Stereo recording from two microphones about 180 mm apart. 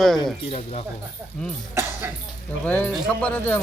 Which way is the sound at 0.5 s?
35° left (ahead or behind).